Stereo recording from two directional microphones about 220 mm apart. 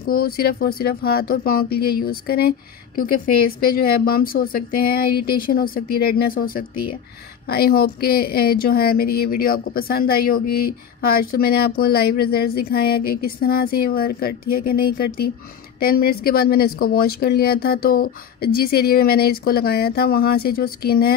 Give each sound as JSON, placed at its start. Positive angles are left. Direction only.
{"t": 0.0, "sound": "a woman's voice", "side_deg": 45}